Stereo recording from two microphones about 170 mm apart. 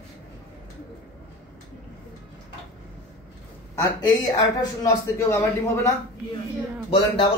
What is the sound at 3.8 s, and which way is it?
A man's voice, 20° left (ahead or behind).